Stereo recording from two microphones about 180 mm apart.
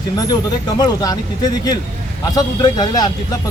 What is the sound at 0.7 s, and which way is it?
Speech, 20° left (ahead or behind).